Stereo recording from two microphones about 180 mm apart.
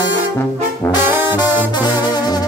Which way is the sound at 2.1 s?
25° left (ahead or behind).